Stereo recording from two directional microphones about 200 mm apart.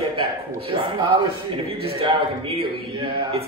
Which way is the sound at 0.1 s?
25° right (ahead or behind).